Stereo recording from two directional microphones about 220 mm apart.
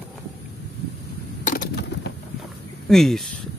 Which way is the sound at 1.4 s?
45° left (ahead or behind).